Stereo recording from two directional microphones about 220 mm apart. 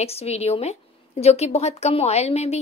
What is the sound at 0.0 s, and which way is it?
A woman's voice, 30° left (ahead or behind).